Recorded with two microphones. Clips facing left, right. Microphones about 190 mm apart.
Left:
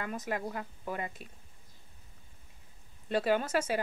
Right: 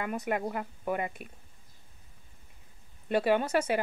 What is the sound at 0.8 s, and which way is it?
Speech, 60° right (ahead or behind).